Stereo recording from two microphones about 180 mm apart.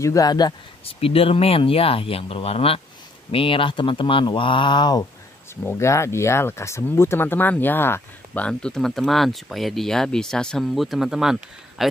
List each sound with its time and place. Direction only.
0.0 s speech: 20° left (ahead or behind); by 11.9 s centre (ahead or behind)